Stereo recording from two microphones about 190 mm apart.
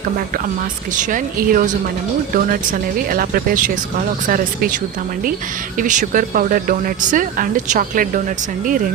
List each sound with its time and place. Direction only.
0.9 s speech: 45° right (ahead or behind)